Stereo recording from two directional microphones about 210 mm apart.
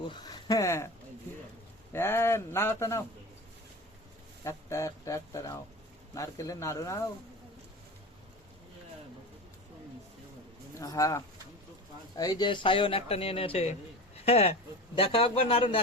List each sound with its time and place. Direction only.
0.1 s speech: 20° left (ahead or behind)
1.9 s speech: 10° left (ahead or behind)
4.4 s speech: 15° left (ahead or behind)
10.8 s speech: 15° left (ahead or behind)